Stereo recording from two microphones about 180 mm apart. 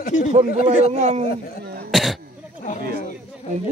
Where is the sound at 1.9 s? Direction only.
Centre (ahead or behind).